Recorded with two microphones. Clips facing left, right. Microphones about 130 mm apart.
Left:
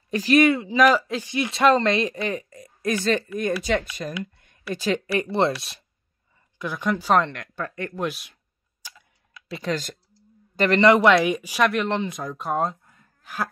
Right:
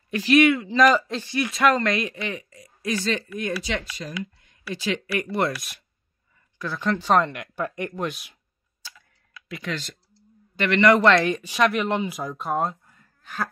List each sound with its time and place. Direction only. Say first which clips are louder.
0.1 s speech: even; 40° left (ahead or behind)
0.7 s speech: even; 5° left (ahead or behind)
1.3 s speech: left 2 dB; 25° left (ahead or behind); by 5.1 s 45° left (ahead or behind)
5.1 s speech: left 3 dB; 30° left (ahead or behind)
6.6 s speech: even; 15° left (ahead or behind)
7.2 s speech: even; 10° right (ahead or behind)
7.9 s speech: left 1 dB; centre (ahead or behind)
9.5 s a man's voice: left 4 dB; 35° left (ahead or behind)
10.9 s speech: even; 15° left (ahead or behind)